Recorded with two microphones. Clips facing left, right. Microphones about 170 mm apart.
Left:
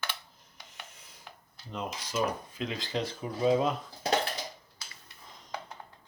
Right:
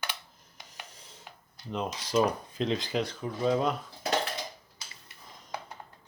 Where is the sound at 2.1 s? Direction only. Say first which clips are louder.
Right 5 dB; 30° right (ahead or behind).